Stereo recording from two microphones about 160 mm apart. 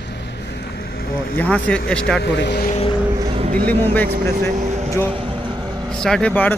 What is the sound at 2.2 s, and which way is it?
Speech, 90° left.